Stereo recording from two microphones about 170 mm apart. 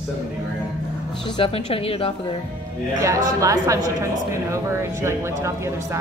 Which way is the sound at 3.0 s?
20° right (ahead or behind).